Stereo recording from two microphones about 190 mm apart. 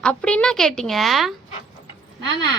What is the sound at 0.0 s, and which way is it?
A woman's voice, 5° left (ahead or behind).